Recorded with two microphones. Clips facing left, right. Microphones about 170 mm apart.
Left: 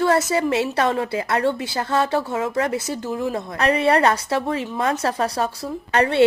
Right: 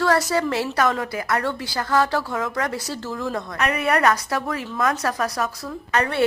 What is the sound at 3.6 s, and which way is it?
A woman's voice, 30° left (ahead or behind).